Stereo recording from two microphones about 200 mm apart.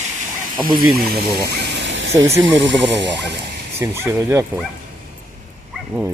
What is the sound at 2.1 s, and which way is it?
Speech, 15° right (ahead or behind).